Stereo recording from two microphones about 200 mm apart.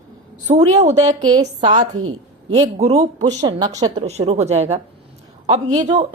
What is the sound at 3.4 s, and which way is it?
Speech, 20° right (ahead or behind).